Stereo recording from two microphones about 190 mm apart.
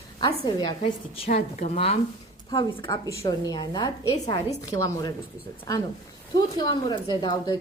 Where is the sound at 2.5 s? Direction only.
25° left (ahead or behind).